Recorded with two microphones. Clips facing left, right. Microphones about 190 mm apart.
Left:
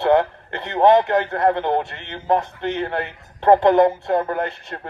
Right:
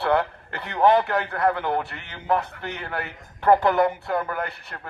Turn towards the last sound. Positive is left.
turn(degrees=25)  # may be behind; listen again after turning